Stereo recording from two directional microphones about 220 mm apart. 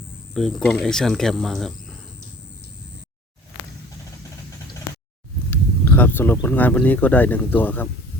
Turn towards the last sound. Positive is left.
turn(degrees=10)  # may be behind; listen again after turning